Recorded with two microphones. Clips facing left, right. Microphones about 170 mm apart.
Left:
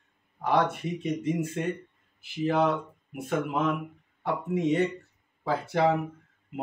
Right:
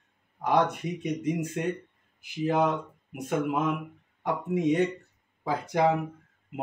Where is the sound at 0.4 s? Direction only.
15° right (ahead or behind).